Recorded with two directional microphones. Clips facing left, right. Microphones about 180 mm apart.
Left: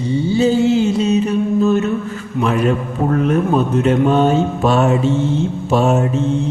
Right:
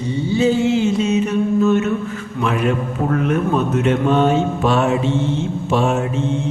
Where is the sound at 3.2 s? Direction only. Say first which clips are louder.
Left 3 dB; 35° left (ahead or behind).